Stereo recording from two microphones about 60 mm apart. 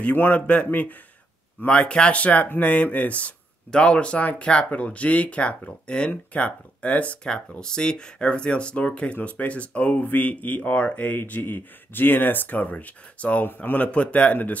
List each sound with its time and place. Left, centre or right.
0.0 s speech: left
1.7 s speech: centre